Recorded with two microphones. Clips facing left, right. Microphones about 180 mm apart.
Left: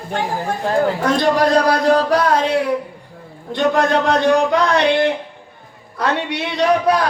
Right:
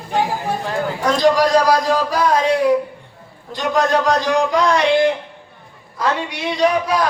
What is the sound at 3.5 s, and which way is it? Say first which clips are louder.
A man's voice: left 2 dB; 60° left (ahead or behind).